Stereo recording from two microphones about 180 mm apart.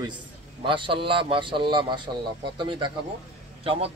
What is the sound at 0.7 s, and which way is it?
A man's voice, 30° right (ahead or behind).